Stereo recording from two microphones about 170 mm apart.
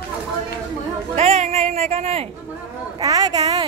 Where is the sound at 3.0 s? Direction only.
20° right (ahead or behind).